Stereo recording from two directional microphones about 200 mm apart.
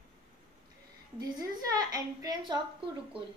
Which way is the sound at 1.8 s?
20° right (ahead or behind).